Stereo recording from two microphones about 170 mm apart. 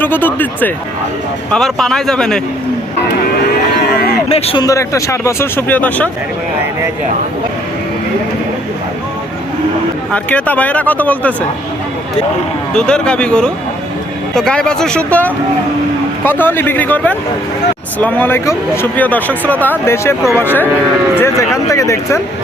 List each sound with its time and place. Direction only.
0.0 s speech: 10° left (ahead or behind)
4.3 s a man's voice: 35° left (ahead or behind)
4.6 s speech: 20° left (ahead or behind)
10.1 s speech: 10° left (ahead or behind)
12.7 s speech: 5° left (ahead or behind)